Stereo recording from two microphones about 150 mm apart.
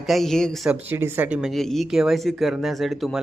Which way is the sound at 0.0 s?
Centre (ahead or behind).